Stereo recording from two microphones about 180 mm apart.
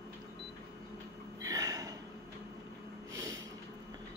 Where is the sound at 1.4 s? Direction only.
20° right (ahead or behind).